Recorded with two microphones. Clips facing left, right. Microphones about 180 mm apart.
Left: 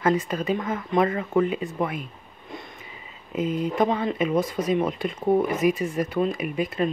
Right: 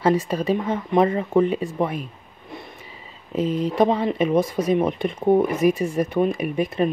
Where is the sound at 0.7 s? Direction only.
25° right (ahead or behind).